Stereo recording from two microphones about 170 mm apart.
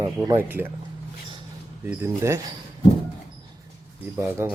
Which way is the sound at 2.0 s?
15° right (ahead or behind).